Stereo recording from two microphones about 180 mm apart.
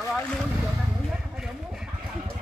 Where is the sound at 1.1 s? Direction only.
5° right (ahead or behind).